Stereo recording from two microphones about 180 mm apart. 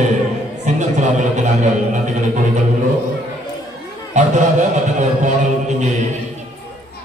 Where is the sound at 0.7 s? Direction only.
40° right (ahead or behind).